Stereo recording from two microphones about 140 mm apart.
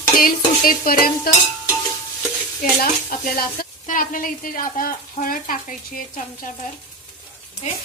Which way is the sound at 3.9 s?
75° left (ahead or behind).